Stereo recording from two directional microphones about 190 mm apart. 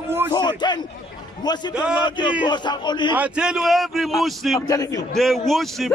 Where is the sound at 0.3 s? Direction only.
25° left (ahead or behind).